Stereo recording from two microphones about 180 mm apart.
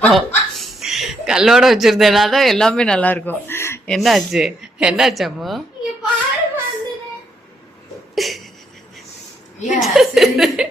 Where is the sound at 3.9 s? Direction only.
Centre (ahead or behind).